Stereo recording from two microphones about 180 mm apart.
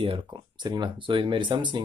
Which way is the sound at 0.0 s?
25° right (ahead or behind).